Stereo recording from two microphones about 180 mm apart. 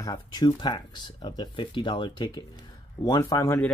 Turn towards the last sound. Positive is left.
turn(degrees=15)  # may be behind; listen again after turning